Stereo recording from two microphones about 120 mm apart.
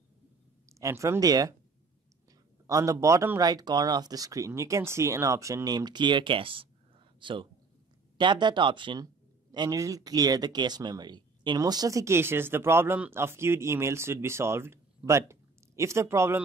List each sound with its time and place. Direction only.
0.7 s speech: 25° right (ahead or behind)
2.6 s speech: 25° right (ahead or behind)